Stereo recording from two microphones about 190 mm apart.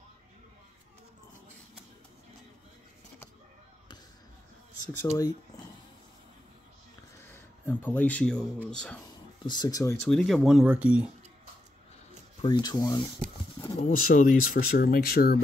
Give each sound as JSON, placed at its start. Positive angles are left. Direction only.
{"t": 5.0, "sound": "speech", "side_deg": 15}
{"t": 7.2, "sound": "a sound", "side_deg": 10}
{"t": 8.6, "sound": "speech", "side_deg": 5}
{"t": 9.5, "sound": "speech", "side_deg": 20}
{"t": 10.0, "sound": "speech", "side_deg": 0}
{"t": 12.4, "sound": "speech", "side_deg": 25}
{"t": 13.7, "sound": "speech", "side_deg": 50}